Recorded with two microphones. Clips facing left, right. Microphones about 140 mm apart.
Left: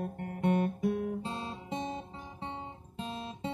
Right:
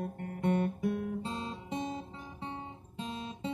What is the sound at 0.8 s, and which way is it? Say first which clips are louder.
Guitar: left 2 dB; 25° left (ahead or behind).